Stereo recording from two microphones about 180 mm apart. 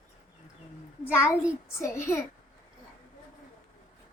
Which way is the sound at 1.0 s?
10° left (ahead or behind).